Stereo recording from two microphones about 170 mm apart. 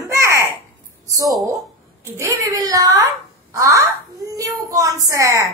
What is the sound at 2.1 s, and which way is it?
A woman's voice, 20° right (ahead or behind).